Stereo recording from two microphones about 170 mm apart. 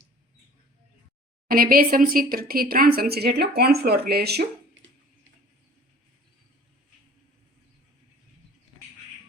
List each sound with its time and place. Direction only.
1.5 s speech: 60° right (ahead or behind)